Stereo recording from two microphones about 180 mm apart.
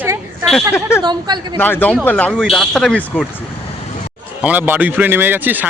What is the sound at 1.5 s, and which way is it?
Speech, 10° left (ahead or behind).